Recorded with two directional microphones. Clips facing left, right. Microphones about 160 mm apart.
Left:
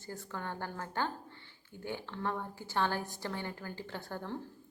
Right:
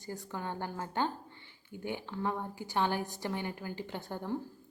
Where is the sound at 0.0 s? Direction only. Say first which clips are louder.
Right 2 dB; 20° right (ahead or behind).